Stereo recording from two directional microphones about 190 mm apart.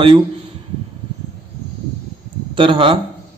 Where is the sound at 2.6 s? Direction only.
25° right (ahead or behind).